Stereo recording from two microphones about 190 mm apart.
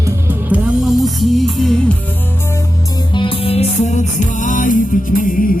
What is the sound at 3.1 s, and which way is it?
Music, 30° left (ahead or behind).